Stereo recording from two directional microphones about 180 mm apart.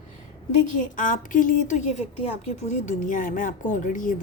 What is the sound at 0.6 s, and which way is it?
Speech, 45° left (ahead or behind).